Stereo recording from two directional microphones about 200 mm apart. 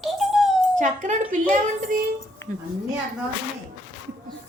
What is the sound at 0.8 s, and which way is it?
Speech, 40° right (ahead or behind).